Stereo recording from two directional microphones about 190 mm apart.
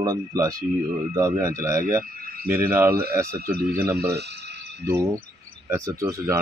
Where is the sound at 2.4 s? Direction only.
50° right (ahead or behind).